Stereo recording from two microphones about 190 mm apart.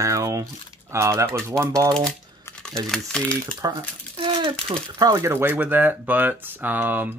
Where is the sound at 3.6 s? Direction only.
20° right (ahead or behind).